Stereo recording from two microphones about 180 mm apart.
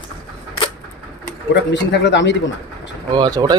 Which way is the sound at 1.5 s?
75° left (ahead or behind).